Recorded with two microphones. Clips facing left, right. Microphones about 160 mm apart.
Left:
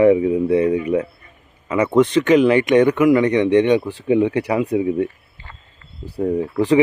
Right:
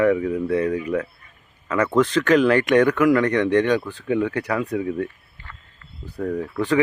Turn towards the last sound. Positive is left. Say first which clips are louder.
# left 5 dB
turn(degrees=25)  # may be behind; listen again after turning